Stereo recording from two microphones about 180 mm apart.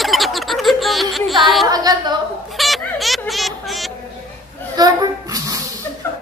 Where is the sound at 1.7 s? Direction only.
20° right (ahead or behind).